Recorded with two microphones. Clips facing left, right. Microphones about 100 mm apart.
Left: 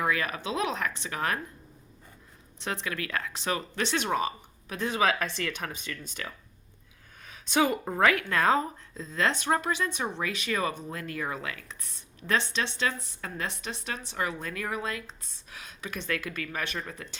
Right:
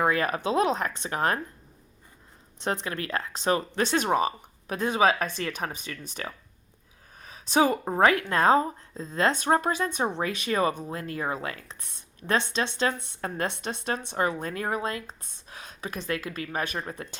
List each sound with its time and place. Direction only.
0.0 s a woman's voice: 40° right (ahead or behind)
2.6 s a woman's voice: 40° right (ahead or behind)
4.9 s speech: 25° right (ahead or behind)
7.2 s a woman's voice: 40° right (ahead or behind)